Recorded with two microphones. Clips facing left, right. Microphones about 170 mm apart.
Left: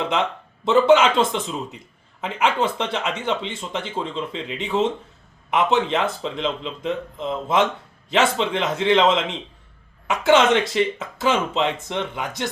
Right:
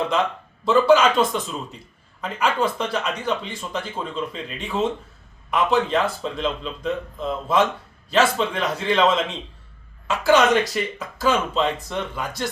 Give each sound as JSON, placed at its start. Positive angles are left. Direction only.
{"t": 0.1, "sound": "a man's voice", "side_deg": 20}